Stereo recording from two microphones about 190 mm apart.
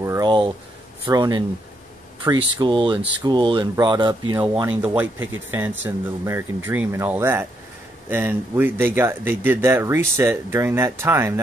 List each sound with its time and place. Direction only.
0.0 s a sound: 20° right (ahead or behind)
1.0 s speech: 20° right (ahead or behind)
4.4 s speech: 10° right (ahead or behind)